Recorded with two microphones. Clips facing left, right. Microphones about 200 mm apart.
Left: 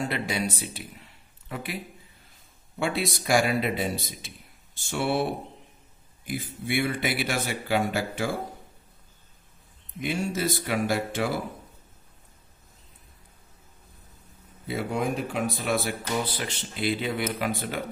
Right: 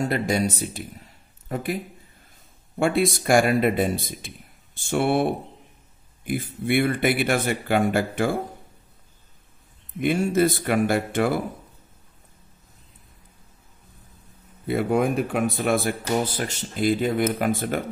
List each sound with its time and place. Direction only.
0.0 s a man's voice: 45° right (ahead or behind)
9.9 s speech: 55° right (ahead or behind)
14.7 s speech: 55° right (ahead or behind)